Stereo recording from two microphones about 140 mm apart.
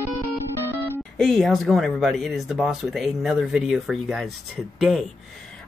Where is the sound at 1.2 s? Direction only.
5° left (ahead or behind).